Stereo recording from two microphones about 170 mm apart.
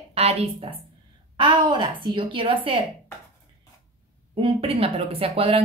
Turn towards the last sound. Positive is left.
turn(degrees=-35)  # may be behind; listen again after turning